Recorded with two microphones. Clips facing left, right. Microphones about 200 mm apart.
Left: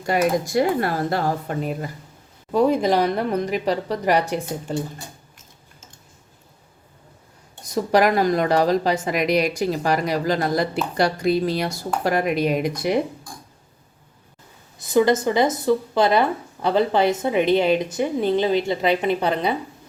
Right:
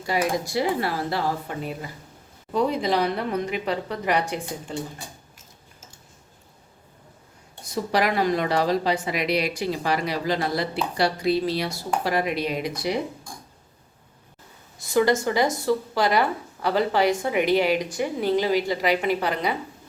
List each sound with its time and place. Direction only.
0.0 s a woman's voice: 50° left (ahead or behind)
7.9 s a woman's voice: 45° left (ahead or behind)
14.8 s speech: 20° left (ahead or behind)